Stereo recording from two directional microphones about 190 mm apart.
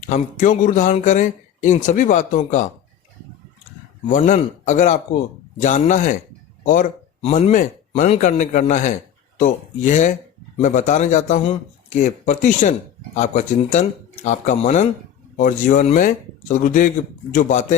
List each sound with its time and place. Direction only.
0.1 s a man's voice: 40° left (ahead or behind)
4.3 s a man's voice: 40° left (ahead or behind)